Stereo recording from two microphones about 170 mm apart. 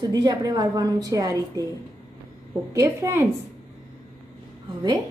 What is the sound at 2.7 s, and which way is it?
Speech, 15° right (ahead or behind).